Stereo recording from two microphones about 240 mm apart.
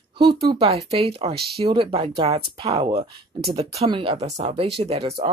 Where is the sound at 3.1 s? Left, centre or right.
Right.